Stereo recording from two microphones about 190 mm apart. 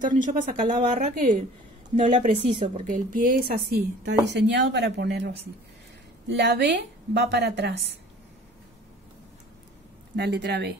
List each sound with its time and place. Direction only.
0.0 s a woman's voice: 45° right (ahead or behind); by 5.3 s 65° right (ahead or behind)
6.3 s a woman's voice: 65° right (ahead or behind)
10.1 s a woman's voice: 60° right (ahead or behind)